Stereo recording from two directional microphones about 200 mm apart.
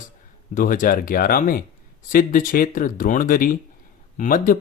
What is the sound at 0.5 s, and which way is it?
Speech, 40° left (ahead or behind).